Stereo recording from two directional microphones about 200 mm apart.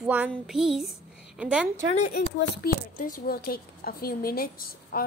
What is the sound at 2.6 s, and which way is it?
A woman's voice, 45° left (ahead or behind).